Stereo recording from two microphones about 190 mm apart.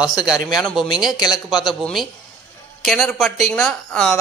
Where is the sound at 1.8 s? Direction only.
Centre (ahead or behind).